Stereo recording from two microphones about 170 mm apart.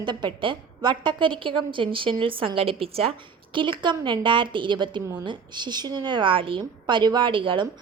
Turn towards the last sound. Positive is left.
turn(degrees=-30)  # may be behind; listen again after turning